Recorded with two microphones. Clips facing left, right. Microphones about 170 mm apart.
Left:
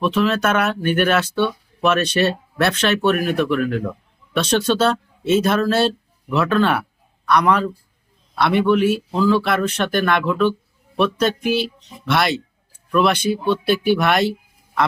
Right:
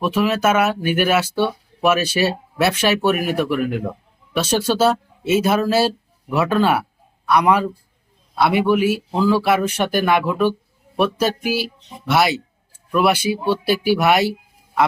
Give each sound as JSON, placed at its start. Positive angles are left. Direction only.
{"t": 0.0, "sound": "a man's voice", "side_deg": -10}